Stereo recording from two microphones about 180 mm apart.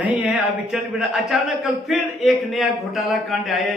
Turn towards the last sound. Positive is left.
turn(degrees=0)  # may be behind; listen again after turning